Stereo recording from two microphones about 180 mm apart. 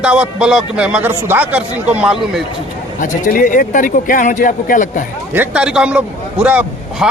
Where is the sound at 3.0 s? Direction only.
45° left (ahead or behind).